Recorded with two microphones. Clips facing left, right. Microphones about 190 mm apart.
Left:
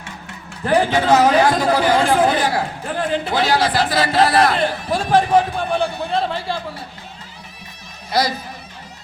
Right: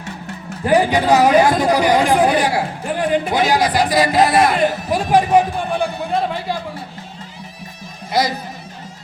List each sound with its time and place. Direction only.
0.6 s speech: 15° right (ahead or behind)